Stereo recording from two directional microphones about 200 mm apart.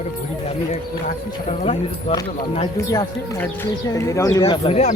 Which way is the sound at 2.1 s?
20° left (ahead or behind).